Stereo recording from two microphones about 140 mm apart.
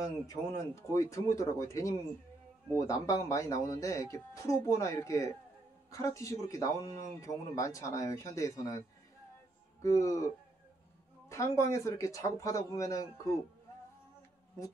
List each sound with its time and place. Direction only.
0.3 s speech: 25° left (ahead or behind)